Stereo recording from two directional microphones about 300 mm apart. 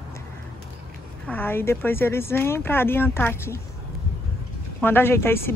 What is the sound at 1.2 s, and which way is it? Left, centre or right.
Speech, centre.